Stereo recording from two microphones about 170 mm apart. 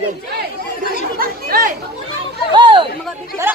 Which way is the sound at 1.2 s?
60° right (ahead or behind).